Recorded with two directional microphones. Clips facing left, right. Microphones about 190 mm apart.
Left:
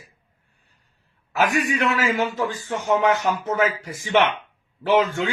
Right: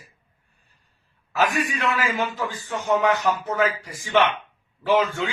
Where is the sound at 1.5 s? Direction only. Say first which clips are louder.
Left 3 dB; 25° left (ahead or behind).